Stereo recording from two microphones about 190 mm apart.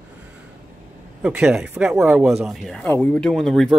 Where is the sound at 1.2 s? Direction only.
5° right (ahead or behind).